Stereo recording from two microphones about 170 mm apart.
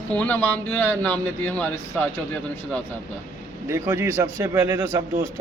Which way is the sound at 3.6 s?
15° right (ahead or behind).